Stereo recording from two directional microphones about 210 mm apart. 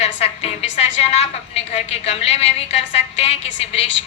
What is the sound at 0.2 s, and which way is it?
A woman's voice, 30° left (ahead or behind).